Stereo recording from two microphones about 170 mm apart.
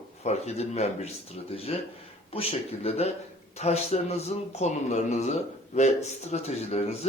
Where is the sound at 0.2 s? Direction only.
40° left (ahead or behind).